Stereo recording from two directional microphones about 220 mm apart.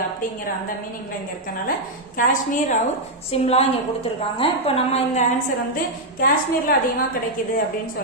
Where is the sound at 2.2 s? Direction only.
40° left (ahead or behind).